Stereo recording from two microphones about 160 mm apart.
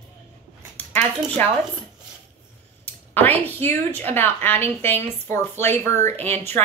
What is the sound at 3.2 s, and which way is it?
A woman's voice, 10° left (ahead or behind).